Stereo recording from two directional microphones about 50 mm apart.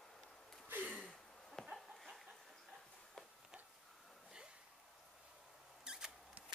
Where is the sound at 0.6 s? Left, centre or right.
Right.